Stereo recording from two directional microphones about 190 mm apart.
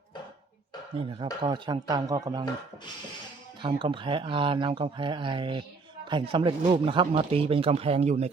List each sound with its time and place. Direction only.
1.4 s speech: 25° right (ahead or behind)
3.6 s speech: 25° right (ahead or behind)